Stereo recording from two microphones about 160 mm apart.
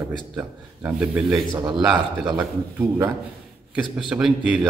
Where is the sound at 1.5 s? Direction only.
30° right (ahead or behind).